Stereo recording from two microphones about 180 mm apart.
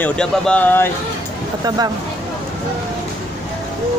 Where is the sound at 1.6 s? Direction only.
20° right (ahead or behind).